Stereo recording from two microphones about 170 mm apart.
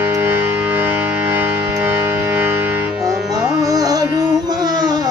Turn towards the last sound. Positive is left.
turn(degrees=-20)  # may be behind; listen again after turning